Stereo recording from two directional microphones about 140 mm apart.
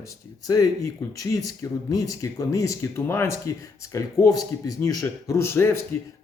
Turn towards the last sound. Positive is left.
turn(degrees=15)  # may be behind; listen again after turning